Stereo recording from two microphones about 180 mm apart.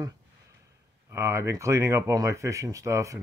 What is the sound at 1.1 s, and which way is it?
Speech, 15° right (ahead or behind).